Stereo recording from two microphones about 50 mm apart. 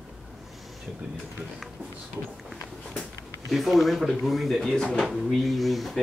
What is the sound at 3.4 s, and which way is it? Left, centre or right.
Speech, centre.